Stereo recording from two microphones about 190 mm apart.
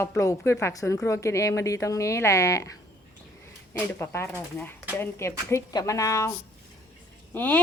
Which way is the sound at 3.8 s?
15° left (ahead or behind).